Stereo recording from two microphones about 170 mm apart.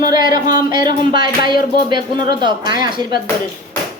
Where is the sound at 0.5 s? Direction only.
25° right (ahead or behind).